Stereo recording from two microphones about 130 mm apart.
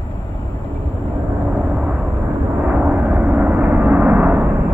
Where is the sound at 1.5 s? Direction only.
10° right (ahead or behind).